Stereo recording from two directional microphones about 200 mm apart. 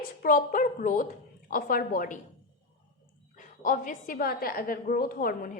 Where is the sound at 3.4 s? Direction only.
40° left (ahead or behind).